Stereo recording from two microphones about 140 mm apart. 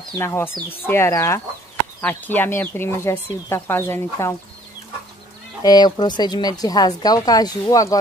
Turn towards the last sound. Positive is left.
turn(degrees=25)  # may be behind; listen again after turning